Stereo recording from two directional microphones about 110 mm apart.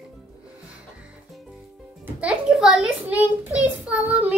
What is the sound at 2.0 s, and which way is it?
A child's voice, 5° right (ahead or behind).